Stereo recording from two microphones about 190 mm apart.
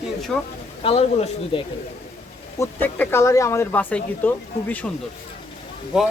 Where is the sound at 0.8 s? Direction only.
30° left (ahead or behind).